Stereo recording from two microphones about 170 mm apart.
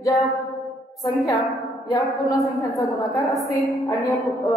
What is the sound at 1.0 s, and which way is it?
A woman's voice, 20° left (ahead or behind).